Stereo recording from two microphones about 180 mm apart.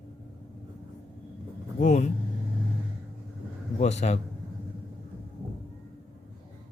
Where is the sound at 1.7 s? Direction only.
40° left (ahead or behind).